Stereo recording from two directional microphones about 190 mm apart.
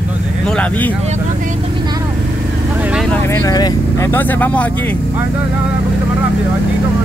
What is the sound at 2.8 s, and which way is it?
Vehicle, 5° right (ahead or behind).